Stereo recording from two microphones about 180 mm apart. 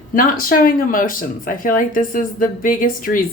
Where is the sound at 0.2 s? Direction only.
55° left (ahead or behind).